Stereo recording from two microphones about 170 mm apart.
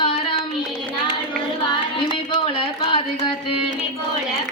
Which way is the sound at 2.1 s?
30° left (ahead or behind).